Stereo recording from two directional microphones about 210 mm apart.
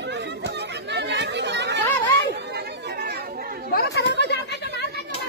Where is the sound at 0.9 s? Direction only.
55° right (ahead or behind).